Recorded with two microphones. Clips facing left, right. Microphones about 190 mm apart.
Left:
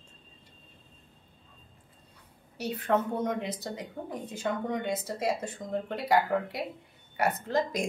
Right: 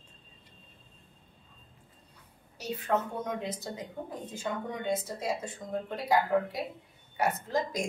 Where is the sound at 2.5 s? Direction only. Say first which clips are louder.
Left 3 dB; 60° left (ahead or behind).